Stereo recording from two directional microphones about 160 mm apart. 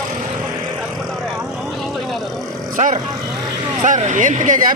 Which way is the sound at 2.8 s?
50° right (ahead or behind).